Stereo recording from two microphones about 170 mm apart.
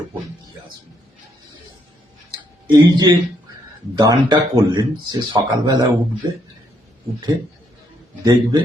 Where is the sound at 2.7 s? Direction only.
25° right (ahead or behind).